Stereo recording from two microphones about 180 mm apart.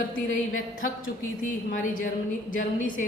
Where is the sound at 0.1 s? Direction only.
50° left (ahead or behind).